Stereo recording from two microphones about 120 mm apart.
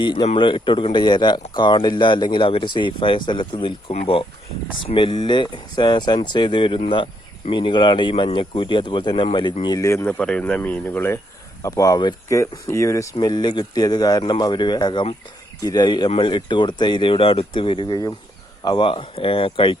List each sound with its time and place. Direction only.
0.0 s speech: 40° left (ahead or behind)
9.6 s speech: 30° left (ahead or behind)
10.1 s speech: 10° left (ahead or behind)
11.6 s speech: 30° left (ahead or behind)
12.3 s speech: 25° left (ahead or behind)
13.1 s speech: 40° left (ahead or behind)